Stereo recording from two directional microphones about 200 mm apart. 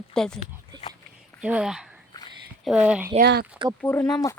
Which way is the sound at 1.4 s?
5° right (ahead or behind).